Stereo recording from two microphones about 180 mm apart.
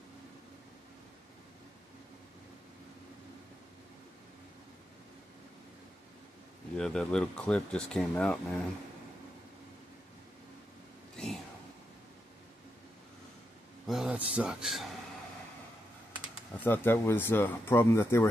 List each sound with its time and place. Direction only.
6.8 s speech: 5° left (ahead or behind)
13.8 s a sound: 5° right (ahead or behind)
14.3 s speech: 5° right (ahead or behind)
16.6 s speech: 10° left (ahead or behind)